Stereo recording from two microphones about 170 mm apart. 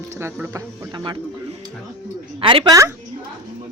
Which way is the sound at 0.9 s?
25° right (ahead or behind).